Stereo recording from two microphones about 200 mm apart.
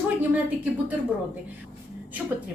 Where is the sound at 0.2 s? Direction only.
5° right (ahead or behind).